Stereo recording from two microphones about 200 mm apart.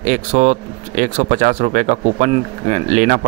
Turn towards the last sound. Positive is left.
turn(degrees=-35)  # may be behind; listen again after turning